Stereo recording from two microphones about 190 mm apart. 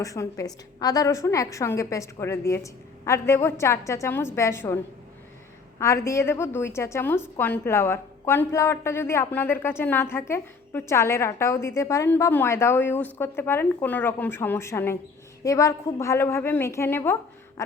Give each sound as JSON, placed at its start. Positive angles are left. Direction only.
{"t": 0.0, "sound": "a woman's voice", "side_deg": 15}
{"t": 6.1, "sound": "a woman's voice", "side_deg": 15}